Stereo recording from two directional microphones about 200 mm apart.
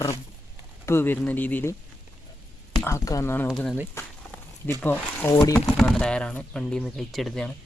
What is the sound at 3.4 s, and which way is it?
Speech, centre (ahead or behind).